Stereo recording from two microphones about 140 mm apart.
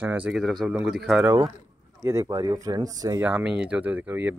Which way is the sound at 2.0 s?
20° right (ahead or behind).